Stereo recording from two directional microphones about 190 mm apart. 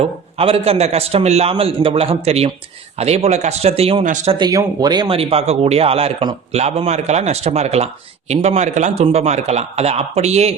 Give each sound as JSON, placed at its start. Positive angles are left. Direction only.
{"t": 0.0, "sound": "speech", "side_deg": -30}
{"t": 4.3, "sound": "speech", "side_deg": -20}